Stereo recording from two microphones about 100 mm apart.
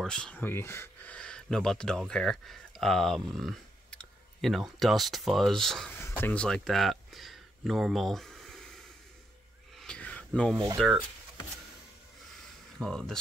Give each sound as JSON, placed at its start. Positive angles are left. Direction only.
{"t": 0.0, "sound": "speech", "side_deg": 10}
{"t": 0.4, "sound": "speech", "side_deg": 25}
{"t": 1.1, "sound": "speech", "side_deg": 10}
{"t": 5.9, "sound": "speech", "side_deg": 25}
{"t": 9.8, "sound": "a sound", "side_deg": 10}
{"t": 10.8, "sound": "speech", "side_deg": 0}
{"t": 12.7, "sound": "speech", "side_deg": 5}